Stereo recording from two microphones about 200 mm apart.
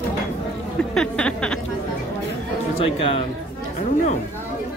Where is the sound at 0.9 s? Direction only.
5° left (ahead or behind).